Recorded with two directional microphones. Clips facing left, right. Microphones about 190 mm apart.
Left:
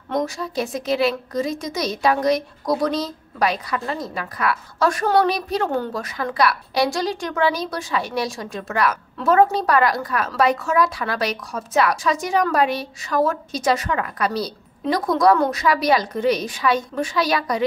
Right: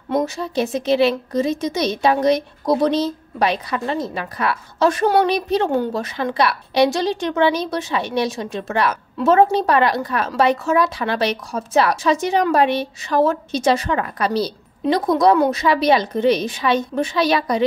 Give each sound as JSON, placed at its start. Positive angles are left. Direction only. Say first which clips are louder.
{"t": 0.2, "sound": "a woman's voice", "louder": "right 3 dB", "side_deg": -25}